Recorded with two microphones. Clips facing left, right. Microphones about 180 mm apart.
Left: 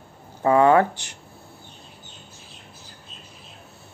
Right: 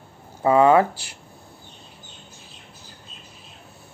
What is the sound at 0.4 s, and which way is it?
Speech, 20° right (ahead or behind).